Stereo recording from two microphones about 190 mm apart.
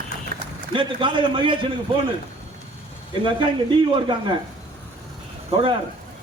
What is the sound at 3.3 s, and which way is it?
Speech, 25° right (ahead or behind).